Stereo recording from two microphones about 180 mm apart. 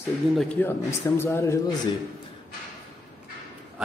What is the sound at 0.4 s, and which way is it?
A man's voice, 10° left (ahead or behind).